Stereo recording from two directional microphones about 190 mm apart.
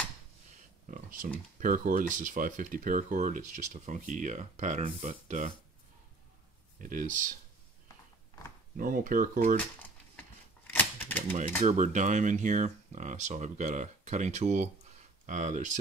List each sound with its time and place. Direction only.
0.8 s a sound: 45° right (ahead or behind)
1.6 s speech: 45° right (ahead or behind)
6.8 s speech: 45° right (ahead or behind)
8.7 s speech: 45° right (ahead or behind)
10.7 s a sound: 10° left (ahead or behind)
11.6 s speech: 40° right (ahead or behind)